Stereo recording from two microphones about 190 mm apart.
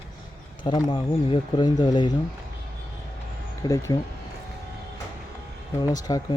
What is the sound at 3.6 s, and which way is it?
Speech, 20° left (ahead or behind).